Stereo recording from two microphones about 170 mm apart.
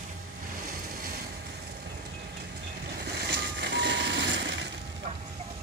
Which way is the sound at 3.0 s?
75° right (ahead or behind).